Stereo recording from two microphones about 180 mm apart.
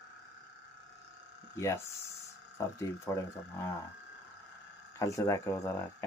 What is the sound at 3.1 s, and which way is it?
Speech, 15° left (ahead or behind).